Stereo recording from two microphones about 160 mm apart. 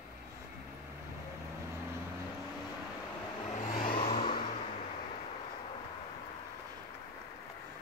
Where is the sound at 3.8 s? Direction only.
35° left (ahead or behind).